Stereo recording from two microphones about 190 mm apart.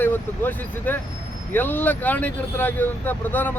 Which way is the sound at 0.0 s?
10° left (ahead or behind).